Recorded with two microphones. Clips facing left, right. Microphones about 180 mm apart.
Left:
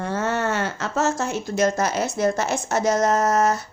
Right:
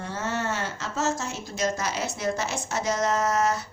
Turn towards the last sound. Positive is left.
turn(degrees=45)  # may be behind; listen again after turning